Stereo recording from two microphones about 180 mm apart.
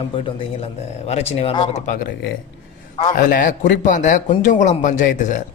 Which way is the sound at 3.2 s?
50° left (ahead or behind).